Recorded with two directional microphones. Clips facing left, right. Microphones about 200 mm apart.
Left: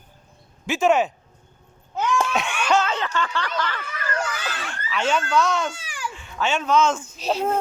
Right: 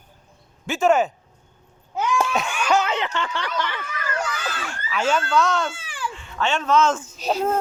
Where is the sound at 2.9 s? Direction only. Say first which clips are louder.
Even; 20° right (ahead or behind).